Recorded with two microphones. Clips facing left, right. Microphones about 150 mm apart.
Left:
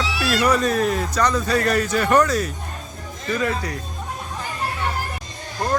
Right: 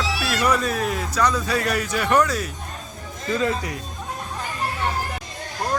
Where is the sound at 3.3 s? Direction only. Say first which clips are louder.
Even; 25° right (ahead or behind).